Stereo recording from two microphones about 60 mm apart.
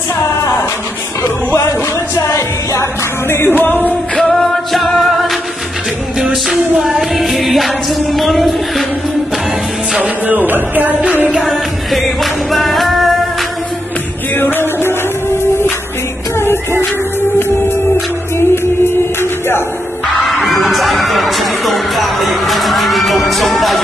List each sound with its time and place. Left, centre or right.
1.7 s music: left
4.2 s music: centre
9.9 s music: right
11.3 s music: centre
14.3 s music: left
17.4 s music: left
20.2 s music: centre